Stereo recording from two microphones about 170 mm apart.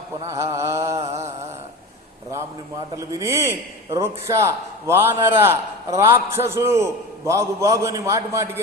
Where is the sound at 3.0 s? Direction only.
20° right (ahead or behind).